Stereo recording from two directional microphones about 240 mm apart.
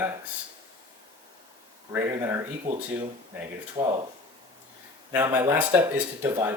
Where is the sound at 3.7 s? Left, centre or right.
Centre.